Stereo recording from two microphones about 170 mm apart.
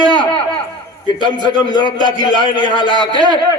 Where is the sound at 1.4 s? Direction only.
25° right (ahead or behind).